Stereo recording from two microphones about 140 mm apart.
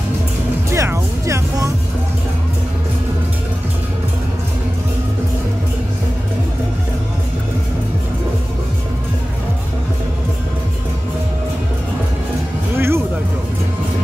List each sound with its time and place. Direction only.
0.7 s music: 20° right (ahead or behind)
12.7 s music: 15° right (ahead or behind)